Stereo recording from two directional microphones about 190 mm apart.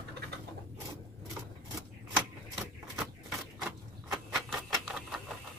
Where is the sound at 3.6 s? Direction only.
Centre (ahead or behind).